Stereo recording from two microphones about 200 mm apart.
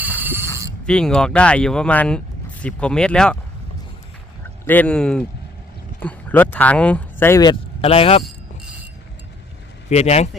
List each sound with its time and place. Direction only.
0.2 s mechanisms: 10° right (ahead or behind)
0.9 s speech: 5° left (ahead or behind)
4.6 s speech: 10° left (ahead or behind)
7.8 s speech: 30° left (ahead or behind)
9.9 s a man's voice: 35° left (ahead or behind)